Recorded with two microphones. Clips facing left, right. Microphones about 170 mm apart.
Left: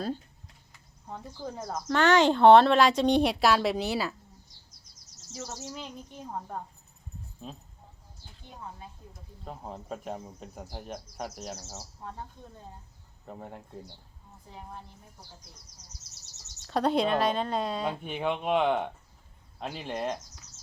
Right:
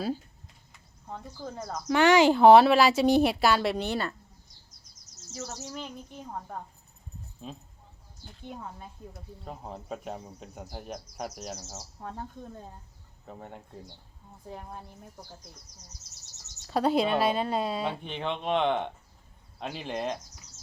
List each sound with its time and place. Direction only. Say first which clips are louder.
0.7 s a sound: right 1 dB; centre (ahead or behind)
1.9 s speech: right 2 dB; 10° right (ahead or behind)
5.3 s speech: right 1 dB; centre (ahead or behind)
7.4 s speech: right 1 dB; centre (ahead or behind)
9.4 s speech: left 1 dB; centre (ahead or behind)
13.2 s speech: left 1 dB; centre (ahead or behind)
16.6 s speech: right 1 dB; 5° right (ahead or behind)
18.0 s speech: left 2 dB; 10° left (ahead or behind)